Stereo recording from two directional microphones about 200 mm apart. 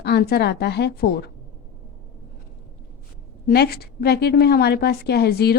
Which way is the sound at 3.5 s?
50° left (ahead or behind).